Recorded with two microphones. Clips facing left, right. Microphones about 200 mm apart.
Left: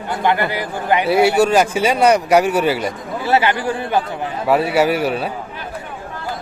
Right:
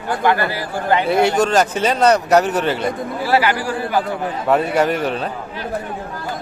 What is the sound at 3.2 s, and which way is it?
Speech, 20° left (ahead or behind).